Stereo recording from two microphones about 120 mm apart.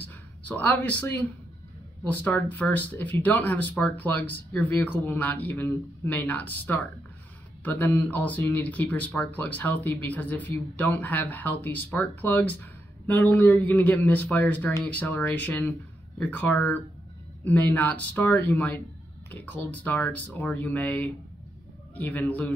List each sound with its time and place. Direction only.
0.6 s speech: 15° left (ahead or behind)